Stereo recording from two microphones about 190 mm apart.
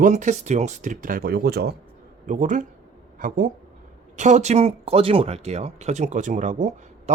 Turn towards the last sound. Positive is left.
turn(degrees=-40)  # may be behind; listen again after turning